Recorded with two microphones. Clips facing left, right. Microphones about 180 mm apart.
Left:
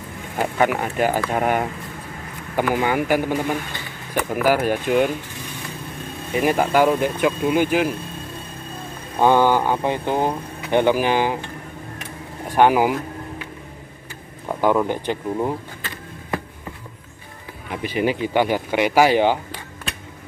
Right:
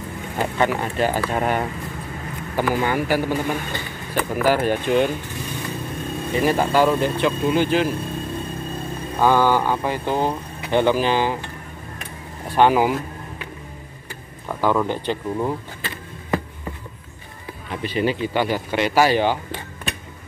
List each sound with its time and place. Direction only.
0.4 s speech: 10° left (ahead or behind)
2.7 s speech: 15° left (ahead or behind)
6.3 s speech: 10° left (ahead or behind)
9.2 s speech: 20° left (ahead or behind)
12.4 s speech: 15° left (ahead or behind)
14.6 s speech: 15° left (ahead or behind)
17.6 s speech: 15° left (ahead or behind)